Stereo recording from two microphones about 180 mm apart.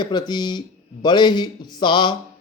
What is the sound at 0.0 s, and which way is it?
A man's voice, 25° left (ahead or behind).